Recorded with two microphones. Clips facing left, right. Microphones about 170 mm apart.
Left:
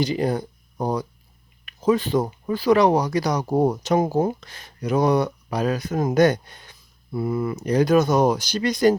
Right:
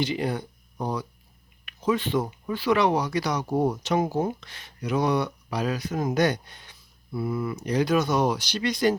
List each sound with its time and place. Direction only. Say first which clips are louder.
0.0 s speech: left 4 dB; 40° left (ahead or behind)